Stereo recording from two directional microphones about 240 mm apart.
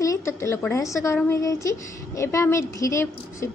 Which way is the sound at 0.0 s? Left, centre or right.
Centre.